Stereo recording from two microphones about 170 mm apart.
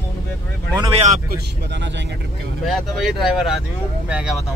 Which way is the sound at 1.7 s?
90° right.